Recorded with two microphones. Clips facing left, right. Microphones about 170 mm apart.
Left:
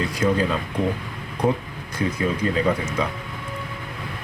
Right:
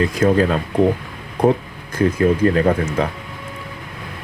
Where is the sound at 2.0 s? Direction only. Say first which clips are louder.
Right 8 dB; 55° right (ahead or behind).